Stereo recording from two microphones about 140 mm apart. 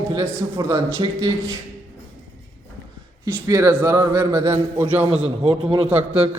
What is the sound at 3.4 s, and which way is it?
A man's voice, 20° right (ahead or behind).